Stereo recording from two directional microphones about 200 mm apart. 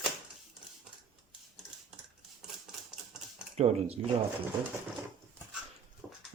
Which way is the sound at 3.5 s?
30° right (ahead or behind).